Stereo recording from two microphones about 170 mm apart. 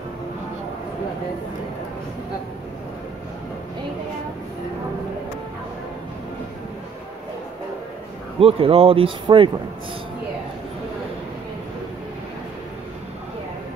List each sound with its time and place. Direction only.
8.4 s speech: 35° right (ahead or behind)